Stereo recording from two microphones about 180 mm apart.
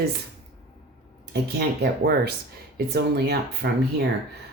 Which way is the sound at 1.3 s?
65° right (ahead or behind).